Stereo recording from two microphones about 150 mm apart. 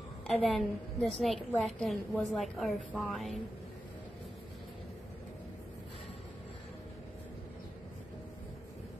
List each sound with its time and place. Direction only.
0.3 s a woman's voice: centre (ahead or behind)